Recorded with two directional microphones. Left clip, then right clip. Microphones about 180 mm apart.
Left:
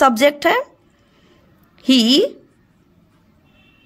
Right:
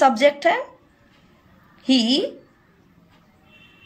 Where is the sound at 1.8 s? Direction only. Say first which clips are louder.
Left 6 dB; 50° left (ahead or behind).